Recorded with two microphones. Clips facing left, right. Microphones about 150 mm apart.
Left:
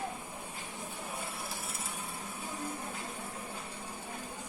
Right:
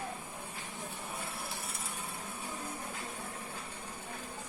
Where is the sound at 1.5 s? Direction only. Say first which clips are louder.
Left 1 dB; centre (ahead or behind).